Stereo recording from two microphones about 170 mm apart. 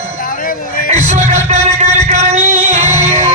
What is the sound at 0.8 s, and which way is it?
Music, 40° right (ahead or behind).